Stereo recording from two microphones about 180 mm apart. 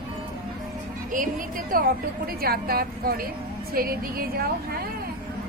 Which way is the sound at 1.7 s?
55° right (ahead or behind).